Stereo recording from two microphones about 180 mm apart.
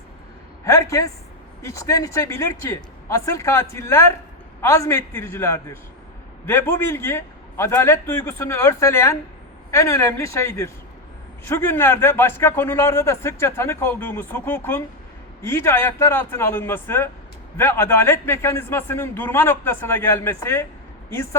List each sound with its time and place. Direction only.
0.6 s a man's voice: 15° left (ahead or behind)